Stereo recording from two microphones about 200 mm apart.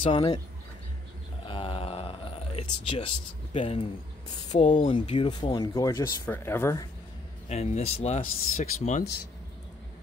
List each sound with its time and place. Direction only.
0.0 s speech: 25° left (ahead or behind)
1.4 s a sound: 25° left (ahead or behind)
3.5 s speech: 25° left (ahead or behind)
7.4 s a man's voice: 35° left (ahead or behind)